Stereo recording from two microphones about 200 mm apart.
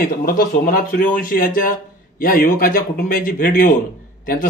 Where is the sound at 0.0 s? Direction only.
45° left (ahead or behind).